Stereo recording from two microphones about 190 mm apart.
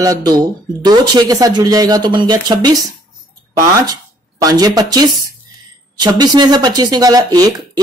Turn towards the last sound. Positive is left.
turn(degrees=-20)  # may be behind; listen again after turning